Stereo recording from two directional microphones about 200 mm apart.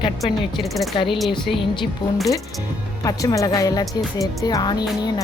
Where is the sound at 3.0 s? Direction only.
15° left (ahead or behind).